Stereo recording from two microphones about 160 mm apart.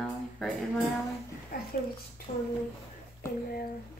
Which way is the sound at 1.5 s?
65° left (ahead or behind).